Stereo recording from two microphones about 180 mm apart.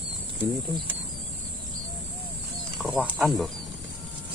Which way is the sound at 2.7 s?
5° right (ahead or behind).